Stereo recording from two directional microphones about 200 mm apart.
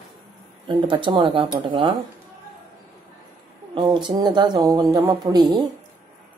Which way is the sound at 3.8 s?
20° right (ahead or behind).